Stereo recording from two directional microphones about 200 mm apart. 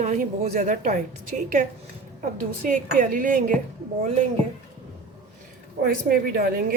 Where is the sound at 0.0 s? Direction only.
35° right (ahead or behind).